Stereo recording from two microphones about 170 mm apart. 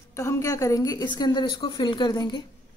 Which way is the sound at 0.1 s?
15° left (ahead or behind).